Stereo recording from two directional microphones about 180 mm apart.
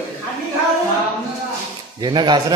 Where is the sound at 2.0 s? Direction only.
25° right (ahead or behind).